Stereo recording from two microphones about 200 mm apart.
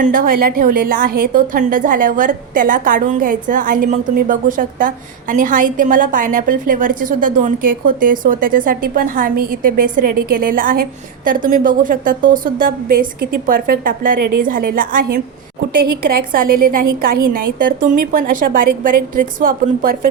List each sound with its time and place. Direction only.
0.0 s a woman's voice: 45° right (ahead or behind)
16.0 s a woman's voice: 45° right (ahead or behind)